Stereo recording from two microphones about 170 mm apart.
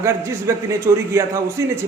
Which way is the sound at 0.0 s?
15° right (ahead or behind).